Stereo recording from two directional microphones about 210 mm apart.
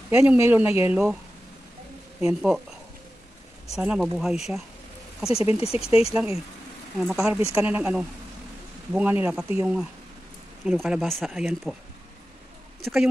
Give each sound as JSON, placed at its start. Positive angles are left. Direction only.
{"t": 0.1, "sound": "speech", "side_deg": -10}
{"t": 2.2, "sound": "speech", "side_deg": -5}
{"t": 3.7, "sound": "speech", "side_deg": 0}
{"t": 5.6, "sound": "speech", "side_deg": 30}
{"t": 6.1, "sound": "speech", "side_deg": -5}
{"t": 12.8, "sound": "speech", "side_deg": 0}